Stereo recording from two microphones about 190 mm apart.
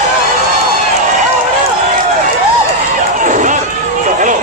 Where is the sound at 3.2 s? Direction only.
40° right (ahead or behind).